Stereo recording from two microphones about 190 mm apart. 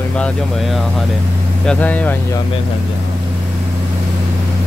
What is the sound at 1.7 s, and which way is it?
Speech, 10° left (ahead or behind).